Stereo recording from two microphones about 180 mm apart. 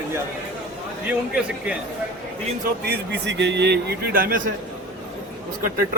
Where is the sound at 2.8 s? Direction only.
65° right (ahead or behind).